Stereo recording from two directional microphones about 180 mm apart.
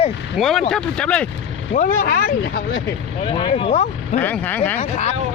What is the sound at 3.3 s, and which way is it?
Speech, 30° left (ahead or behind).